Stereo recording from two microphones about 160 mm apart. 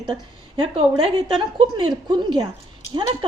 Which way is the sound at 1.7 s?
30° right (ahead or behind).